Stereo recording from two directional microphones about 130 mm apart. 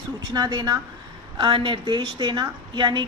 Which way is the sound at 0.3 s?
30° right (ahead or behind).